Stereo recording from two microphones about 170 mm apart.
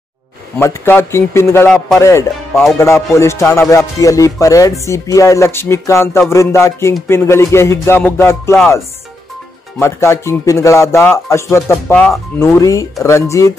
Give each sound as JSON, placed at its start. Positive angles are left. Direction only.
{"t": 0.6, "sound": "music", "side_deg": 15}
{"t": 9.8, "sound": "music", "side_deg": 15}